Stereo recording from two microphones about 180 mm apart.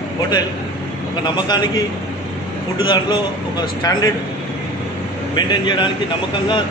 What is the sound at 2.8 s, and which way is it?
Speech, 25° left (ahead or behind).